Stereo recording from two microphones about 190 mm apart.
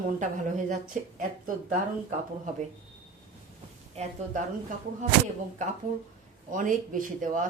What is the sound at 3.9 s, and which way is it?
Speech, 35° right (ahead or behind).